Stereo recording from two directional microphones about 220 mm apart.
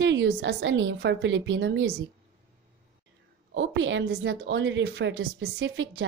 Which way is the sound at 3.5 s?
55° right (ahead or behind).